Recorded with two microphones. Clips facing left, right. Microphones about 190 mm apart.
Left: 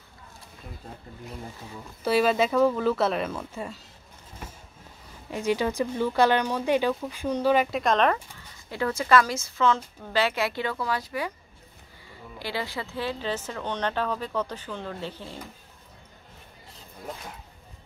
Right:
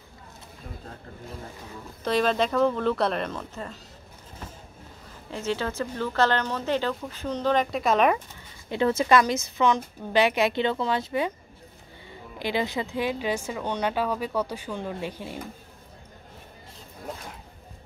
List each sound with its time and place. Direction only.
2.0 s speech: 5° left (ahead or behind)
5.3 s speech: 15° left (ahead or behind)
7.8 s speech: 10° right (ahead or behind)
8.6 s a woman's voice: 20° right (ahead or behind)
12.4 s speech: 20° right (ahead or behind)